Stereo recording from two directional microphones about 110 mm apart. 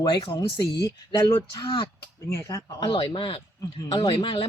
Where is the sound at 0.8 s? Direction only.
30° left (ahead or behind).